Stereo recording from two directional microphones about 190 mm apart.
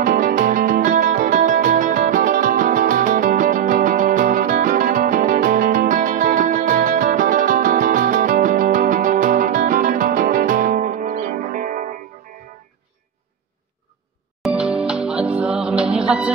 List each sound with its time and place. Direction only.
0.0 s music: 45° right (ahead or behind)
14.4 s music: 5° right (ahead or behind)